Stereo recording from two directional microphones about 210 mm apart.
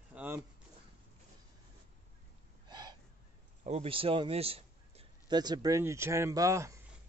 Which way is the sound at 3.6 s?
30° right (ahead or behind).